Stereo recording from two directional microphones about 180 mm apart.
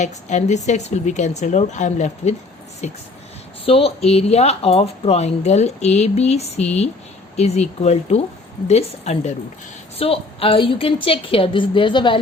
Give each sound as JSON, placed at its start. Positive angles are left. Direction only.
{"t": 0.0, "sound": "a woman's voice", "side_deg": 40}